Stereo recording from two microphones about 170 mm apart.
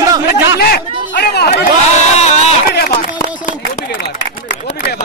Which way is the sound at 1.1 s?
75° left (ahead or behind).